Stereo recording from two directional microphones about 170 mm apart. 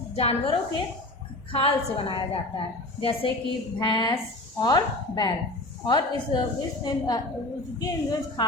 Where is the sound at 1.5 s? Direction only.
35° left (ahead or behind).